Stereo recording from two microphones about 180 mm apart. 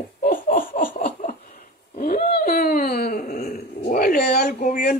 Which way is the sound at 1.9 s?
55° left (ahead or behind).